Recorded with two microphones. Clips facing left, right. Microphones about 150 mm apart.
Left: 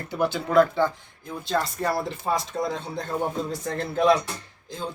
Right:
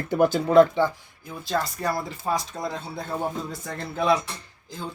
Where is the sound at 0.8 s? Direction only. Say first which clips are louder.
Even; 10° right (ahead or behind).